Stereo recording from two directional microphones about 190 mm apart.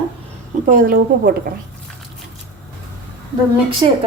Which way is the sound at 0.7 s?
50° right (ahead or behind).